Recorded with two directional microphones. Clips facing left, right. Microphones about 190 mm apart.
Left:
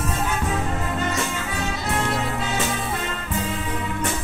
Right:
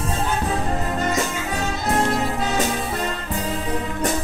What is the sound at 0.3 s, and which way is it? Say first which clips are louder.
Music: right 2 dB; 40° right (ahead or behind).